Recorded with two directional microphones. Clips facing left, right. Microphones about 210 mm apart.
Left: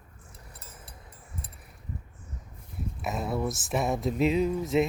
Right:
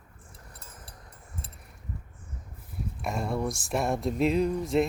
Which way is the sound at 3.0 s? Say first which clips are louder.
Even; 5° left (ahead or behind).